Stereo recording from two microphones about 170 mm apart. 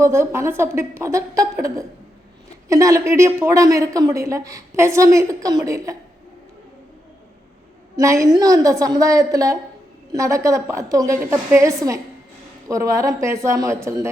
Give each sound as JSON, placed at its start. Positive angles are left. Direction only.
{"t": 0.0, "sound": "a woman's voice", "side_deg": -15}
{"t": 7.9, "sound": "a woman's voice", "side_deg": -20}